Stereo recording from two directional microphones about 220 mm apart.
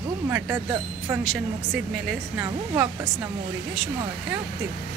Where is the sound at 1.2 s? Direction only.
Centre (ahead or behind).